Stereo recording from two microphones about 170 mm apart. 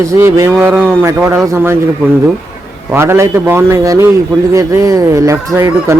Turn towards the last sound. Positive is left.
turn(degrees=-15)  # may be behind; listen again after turning